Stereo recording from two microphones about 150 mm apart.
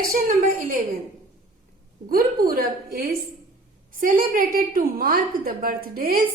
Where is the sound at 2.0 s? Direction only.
75° right (ahead or behind).